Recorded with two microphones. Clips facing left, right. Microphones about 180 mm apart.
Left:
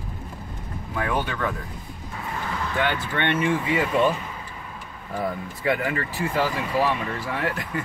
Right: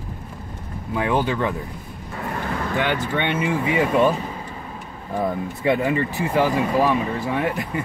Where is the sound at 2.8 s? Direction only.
15° right (ahead or behind).